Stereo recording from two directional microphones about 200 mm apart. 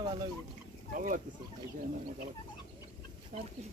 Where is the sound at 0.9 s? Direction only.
40° right (ahead or behind).